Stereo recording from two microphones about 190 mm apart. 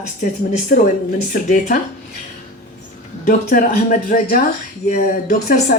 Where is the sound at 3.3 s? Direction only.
45° left (ahead or behind).